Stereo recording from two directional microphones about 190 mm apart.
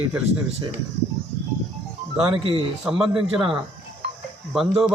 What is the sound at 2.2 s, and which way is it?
Speech, 25° right (ahead or behind).